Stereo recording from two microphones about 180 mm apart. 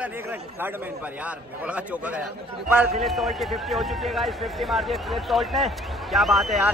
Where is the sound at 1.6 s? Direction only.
5° right (ahead or behind).